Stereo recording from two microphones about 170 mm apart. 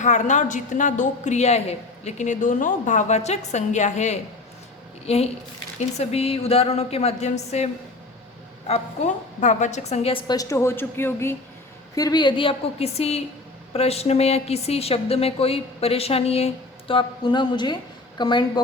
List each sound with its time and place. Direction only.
0.0 s a woman's voice: 45° left (ahead or behind); by 18.6 s 25° left (ahead or behind)